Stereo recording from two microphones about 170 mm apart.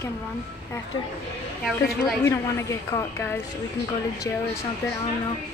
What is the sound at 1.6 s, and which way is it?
Speech, centre (ahead or behind).